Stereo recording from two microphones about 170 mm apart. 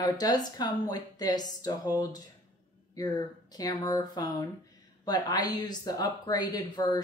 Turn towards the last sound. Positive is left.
turn(degrees=25)  # may be behind; listen again after turning